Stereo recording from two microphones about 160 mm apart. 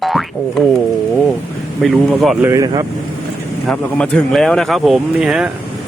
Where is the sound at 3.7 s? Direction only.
5° left (ahead or behind).